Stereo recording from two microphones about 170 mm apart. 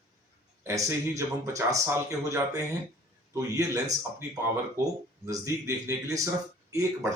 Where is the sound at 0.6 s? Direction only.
20° right (ahead or behind).